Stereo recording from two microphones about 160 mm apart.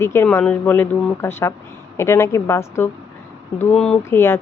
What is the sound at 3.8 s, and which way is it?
Speech, 5° left (ahead or behind).